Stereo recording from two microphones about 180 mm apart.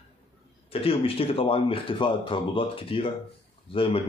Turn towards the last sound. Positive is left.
turn(degrees=30)  # may be behind; listen again after turning